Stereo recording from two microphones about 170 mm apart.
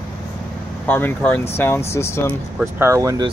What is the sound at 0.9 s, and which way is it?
Speech, 10° left (ahead or behind).